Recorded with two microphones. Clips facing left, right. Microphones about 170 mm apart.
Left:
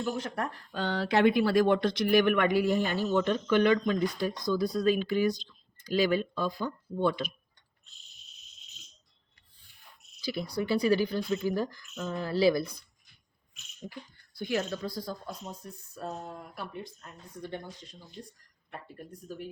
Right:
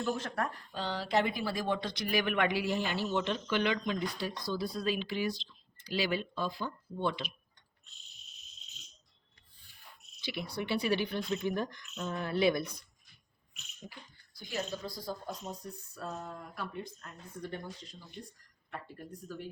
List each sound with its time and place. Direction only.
0.4 s speech: 60° left (ahead or behind)
10.2 s speech: 35° left (ahead or behind)
14.3 s speech: 65° left (ahead or behind)